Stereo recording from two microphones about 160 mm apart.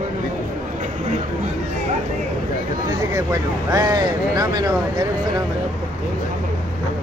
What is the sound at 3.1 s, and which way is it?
Speech, 20° right (ahead or behind).